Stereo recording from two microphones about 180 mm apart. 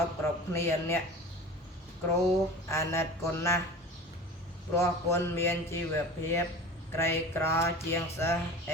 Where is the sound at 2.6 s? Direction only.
15° left (ahead or behind).